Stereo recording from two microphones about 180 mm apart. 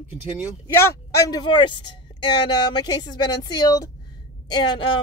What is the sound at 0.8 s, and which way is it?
Speech, 15° left (ahead or behind).